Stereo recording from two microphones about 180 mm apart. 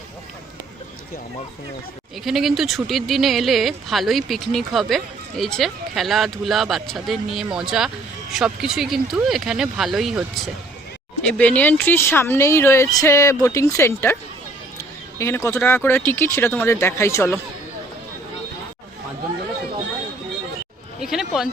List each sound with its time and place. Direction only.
2.2 s speech: centre (ahead or behind)
15.2 s speech: 15° left (ahead or behind)
21.0 s speech: centre (ahead or behind)